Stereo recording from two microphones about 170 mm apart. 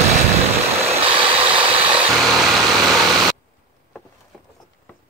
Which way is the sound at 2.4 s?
Centre (ahead or behind).